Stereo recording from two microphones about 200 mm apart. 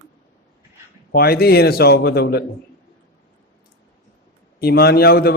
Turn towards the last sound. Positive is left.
turn(degrees=50)  # may be behind; listen again after turning